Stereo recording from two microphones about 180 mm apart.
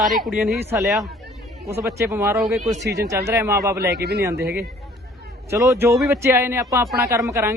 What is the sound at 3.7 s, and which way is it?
Speech, 65° right (ahead or behind).